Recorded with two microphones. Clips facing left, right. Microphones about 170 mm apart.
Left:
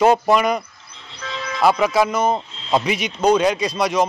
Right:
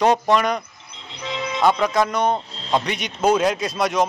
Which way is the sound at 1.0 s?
20° right (ahead or behind).